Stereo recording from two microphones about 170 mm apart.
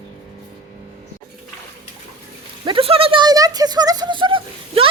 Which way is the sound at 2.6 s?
30° right (ahead or behind).